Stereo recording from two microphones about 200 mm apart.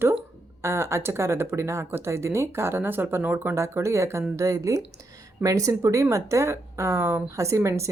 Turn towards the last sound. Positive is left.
turn(degrees=-15)  # may be behind; listen again after turning